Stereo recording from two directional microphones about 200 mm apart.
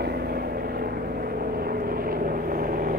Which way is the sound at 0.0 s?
55° right (ahead or behind).